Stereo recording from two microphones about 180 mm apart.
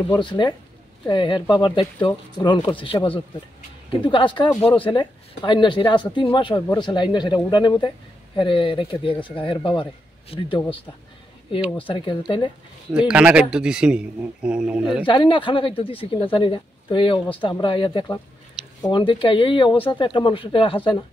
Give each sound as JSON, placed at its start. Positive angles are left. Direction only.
{"t": 0.2, "sound": "a man's voice", "side_deg": 25}
{"t": 11.8, "sound": "a man's voice", "side_deg": 30}
{"t": 13.1, "sound": "speech", "side_deg": -5}
{"t": 15.0, "sound": "a man's voice", "side_deg": 25}